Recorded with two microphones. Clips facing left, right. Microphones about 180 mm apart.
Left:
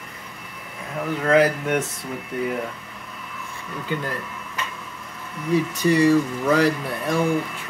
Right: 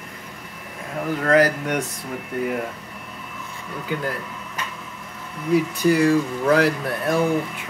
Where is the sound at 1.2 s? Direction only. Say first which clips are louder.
Even; centre (ahead or behind).